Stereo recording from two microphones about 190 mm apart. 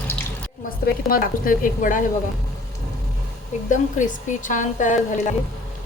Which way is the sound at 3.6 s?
40° left (ahead or behind).